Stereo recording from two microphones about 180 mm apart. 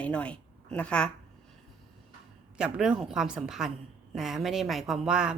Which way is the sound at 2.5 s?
5° right (ahead or behind).